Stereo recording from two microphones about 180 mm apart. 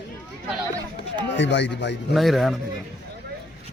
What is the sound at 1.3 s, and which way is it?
Speech, 80° left.